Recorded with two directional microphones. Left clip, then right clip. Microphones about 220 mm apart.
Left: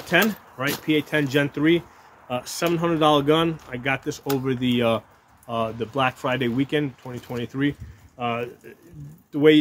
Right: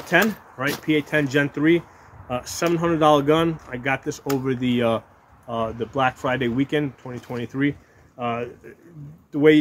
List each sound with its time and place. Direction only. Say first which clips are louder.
0.0 s speech: right 1 dB; 5° right (ahead or behind)